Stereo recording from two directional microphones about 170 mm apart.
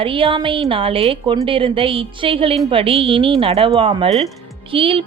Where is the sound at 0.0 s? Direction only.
30° right (ahead or behind).